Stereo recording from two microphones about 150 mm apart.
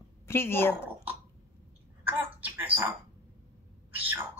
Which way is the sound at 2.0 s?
10° right (ahead or behind).